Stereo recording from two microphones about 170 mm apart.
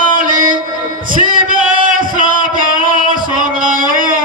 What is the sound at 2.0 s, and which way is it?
Music, 55° right (ahead or behind).